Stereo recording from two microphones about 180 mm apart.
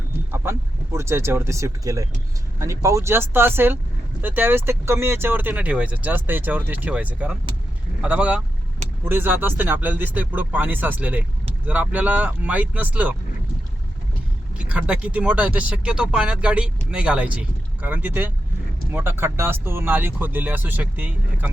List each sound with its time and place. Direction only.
0.3 s a sound: 15° right (ahead or behind)
0.9 s speech: 15° right (ahead or behind)
14.6 s speech: 5° right (ahead or behind)